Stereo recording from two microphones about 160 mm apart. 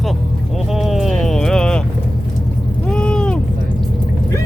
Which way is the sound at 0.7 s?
Centre (ahead or behind).